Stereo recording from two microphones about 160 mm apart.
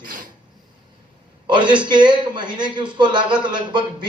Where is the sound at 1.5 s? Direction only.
30° right (ahead or behind).